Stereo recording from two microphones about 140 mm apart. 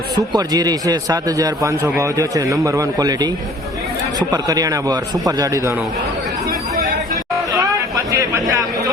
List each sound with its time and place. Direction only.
0.2 s a man's voice: 30° right (ahead or behind)
7.5 s chatter: 25° right (ahead or behind)